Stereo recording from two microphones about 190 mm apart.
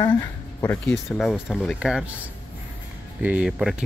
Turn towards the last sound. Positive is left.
turn(degrees=-5)  # may be behind; listen again after turning